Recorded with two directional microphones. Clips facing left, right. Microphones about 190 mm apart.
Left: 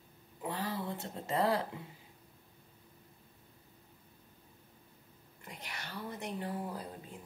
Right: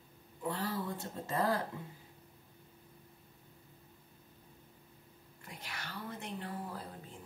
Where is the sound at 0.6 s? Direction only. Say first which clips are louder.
Left 1 dB; 50° right (ahead or behind).